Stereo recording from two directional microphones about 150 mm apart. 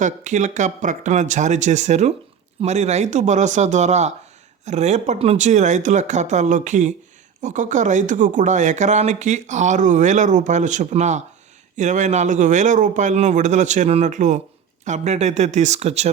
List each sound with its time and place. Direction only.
0.0 s a man's voice: 55° right (ahead or behind)